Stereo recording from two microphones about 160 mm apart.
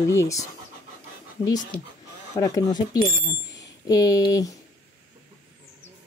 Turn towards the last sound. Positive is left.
turn(degrees=20)  # may be behind; listen again after turning